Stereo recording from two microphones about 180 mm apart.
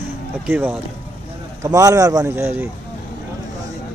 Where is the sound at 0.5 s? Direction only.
10° right (ahead or behind).